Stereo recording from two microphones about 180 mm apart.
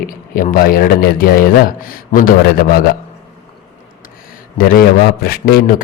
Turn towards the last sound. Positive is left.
turn(degrees=55)  # may be behind; listen again after turning